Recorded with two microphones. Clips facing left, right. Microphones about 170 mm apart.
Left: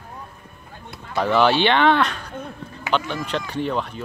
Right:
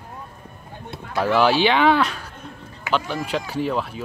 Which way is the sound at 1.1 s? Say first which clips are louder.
Even; 5° right (ahead or behind).